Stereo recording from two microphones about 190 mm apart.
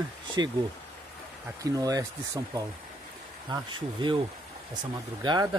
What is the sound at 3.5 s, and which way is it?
Speech, 25° right (ahead or behind).